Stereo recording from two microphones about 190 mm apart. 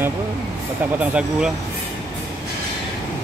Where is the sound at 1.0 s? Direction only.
5° right (ahead or behind).